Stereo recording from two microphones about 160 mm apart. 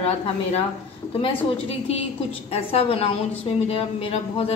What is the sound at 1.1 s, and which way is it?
A woman's voice, 40° left (ahead or behind).